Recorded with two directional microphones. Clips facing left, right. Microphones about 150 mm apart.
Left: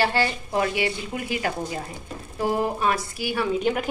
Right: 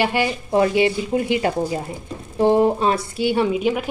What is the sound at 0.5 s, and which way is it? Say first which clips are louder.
A woman's voice: right 10 dB; 25° right (ahead or behind).